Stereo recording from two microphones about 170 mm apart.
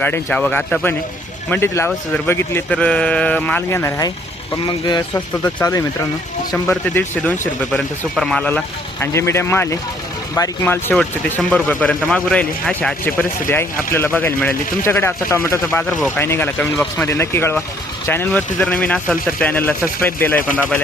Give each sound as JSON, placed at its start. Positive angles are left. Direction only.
{"t": 0.0, "sound": "speech", "side_deg": 10}
{"t": 5.4, "sound": "speech", "side_deg": 10}